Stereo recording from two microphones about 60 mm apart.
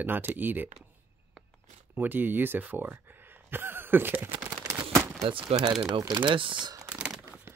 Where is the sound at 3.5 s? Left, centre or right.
Right.